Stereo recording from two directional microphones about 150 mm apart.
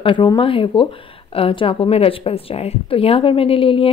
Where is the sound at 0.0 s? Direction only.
35° left (ahead or behind).